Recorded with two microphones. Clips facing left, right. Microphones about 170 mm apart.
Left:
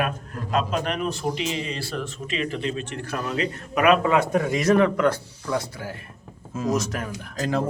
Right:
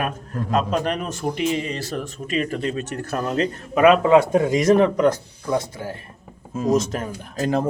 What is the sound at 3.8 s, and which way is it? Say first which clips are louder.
A man's voice: right 5 dB; 25° right (ahead or behind).